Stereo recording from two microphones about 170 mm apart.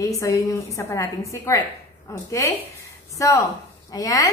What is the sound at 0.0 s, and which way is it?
A woman's voice, 20° left (ahead or behind).